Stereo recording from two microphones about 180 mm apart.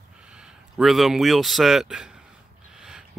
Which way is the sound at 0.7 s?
Centre (ahead or behind).